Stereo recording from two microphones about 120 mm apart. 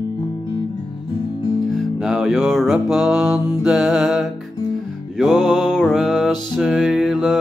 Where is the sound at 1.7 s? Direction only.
Centre (ahead or behind).